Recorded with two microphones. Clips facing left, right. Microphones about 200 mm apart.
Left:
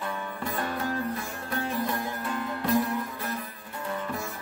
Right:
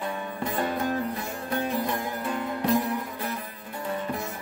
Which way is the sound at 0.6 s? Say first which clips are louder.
Right 4 dB; 20° right (ahead or behind).